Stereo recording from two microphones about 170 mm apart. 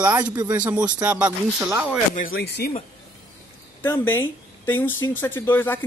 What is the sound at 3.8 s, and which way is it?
Speech, 15° left (ahead or behind).